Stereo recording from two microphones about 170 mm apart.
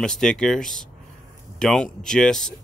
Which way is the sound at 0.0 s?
5° left (ahead or behind).